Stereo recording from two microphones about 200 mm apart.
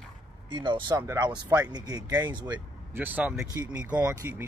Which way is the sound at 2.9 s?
10° right (ahead or behind).